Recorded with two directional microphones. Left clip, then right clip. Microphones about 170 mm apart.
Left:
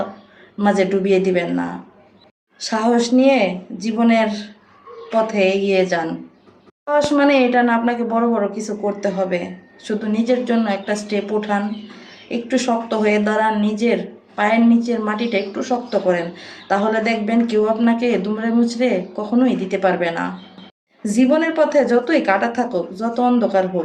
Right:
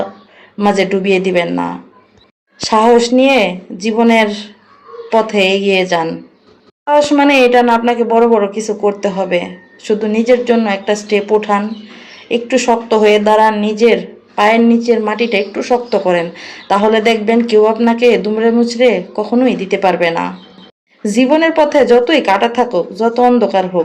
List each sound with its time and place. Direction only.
0.6 s speech: 20° right (ahead or behind)